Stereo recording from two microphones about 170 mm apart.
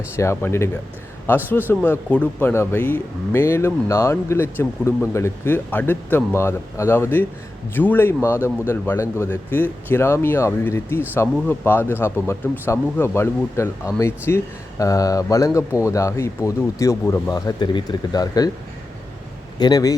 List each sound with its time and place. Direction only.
0.2 s speech: 15° left (ahead or behind)
19.5 s speech: 25° left (ahead or behind)